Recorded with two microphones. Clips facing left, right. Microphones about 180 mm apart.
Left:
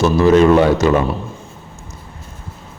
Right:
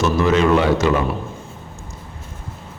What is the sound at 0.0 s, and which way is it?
Speech, 35° left (ahead or behind).